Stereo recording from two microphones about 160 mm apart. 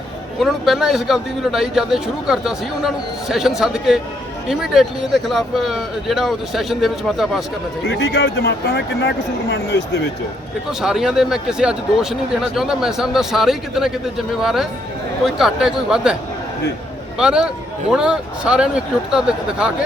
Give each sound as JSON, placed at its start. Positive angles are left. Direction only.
{"t": 0.3, "sound": "a man's voice", "side_deg": 0}
{"t": 7.9, "sound": "speech", "side_deg": 90}
{"t": 10.7, "sound": "a man's voice", "side_deg": -5}
{"t": 17.2, "sound": "a man's voice", "side_deg": -5}